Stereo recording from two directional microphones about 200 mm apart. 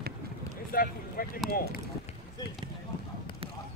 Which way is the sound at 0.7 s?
45° left (ahead or behind).